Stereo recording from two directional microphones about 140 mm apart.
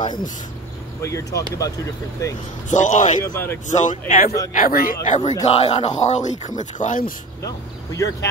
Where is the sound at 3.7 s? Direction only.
60° left (ahead or behind).